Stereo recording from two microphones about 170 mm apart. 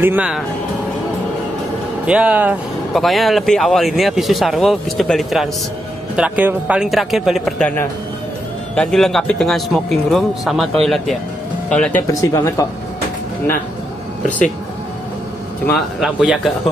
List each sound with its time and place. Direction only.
0.0 s speech: 10° right (ahead or behind)
2.0 s speech: 5° right (ahead or behind)
12.1 s speech: 20° left (ahead or behind)
16.0 s speech: 5° right (ahead or behind)